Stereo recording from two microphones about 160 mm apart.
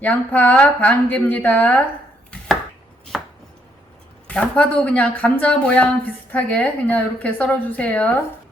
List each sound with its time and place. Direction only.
0.0 s a woman's voice: 10° left (ahead or behind)
3.1 s chopping: centre (ahead or behind)
4.3 s a woman's voice: 10° left (ahead or behind)